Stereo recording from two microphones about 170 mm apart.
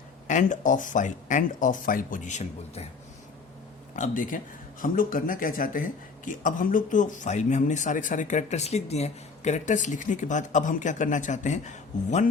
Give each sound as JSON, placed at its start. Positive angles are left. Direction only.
{"t": 0.3, "sound": "speech", "side_deg": 50}
{"t": 3.9, "sound": "speech", "side_deg": 50}